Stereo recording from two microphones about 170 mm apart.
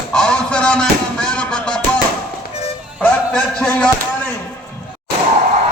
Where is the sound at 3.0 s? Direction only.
5° left (ahead or behind).